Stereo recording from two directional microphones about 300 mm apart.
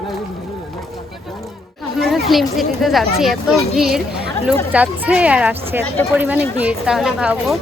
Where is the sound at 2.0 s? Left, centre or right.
Centre.